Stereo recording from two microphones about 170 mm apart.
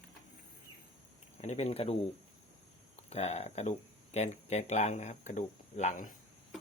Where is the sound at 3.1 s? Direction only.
40° left (ahead or behind).